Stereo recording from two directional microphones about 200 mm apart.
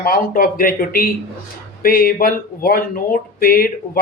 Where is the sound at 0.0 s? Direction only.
45° left (ahead or behind).